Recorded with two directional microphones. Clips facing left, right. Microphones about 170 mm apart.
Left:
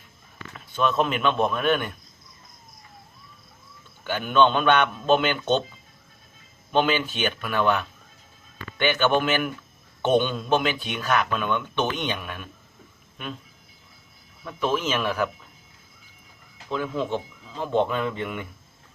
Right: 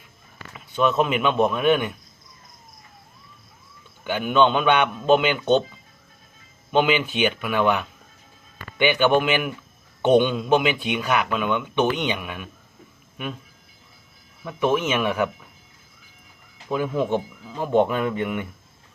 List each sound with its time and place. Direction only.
0.5 s a man's voice: 10° right (ahead or behind)
4.0 s a man's voice: 10° right (ahead or behind)
6.7 s a man's voice: 15° right (ahead or behind)
14.4 s a man's voice: 15° right (ahead or behind)
16.6 s a man's voice: 15° right (ahead or behind)